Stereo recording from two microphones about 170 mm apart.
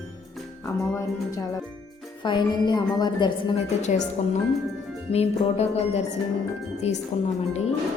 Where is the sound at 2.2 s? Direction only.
25° left (ahead or behind).